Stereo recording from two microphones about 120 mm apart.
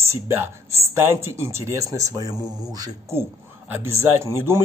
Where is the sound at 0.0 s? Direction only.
20° right (ahead or behind).